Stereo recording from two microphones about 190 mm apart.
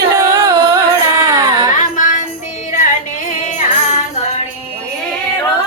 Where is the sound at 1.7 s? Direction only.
45° left (ahead or behind).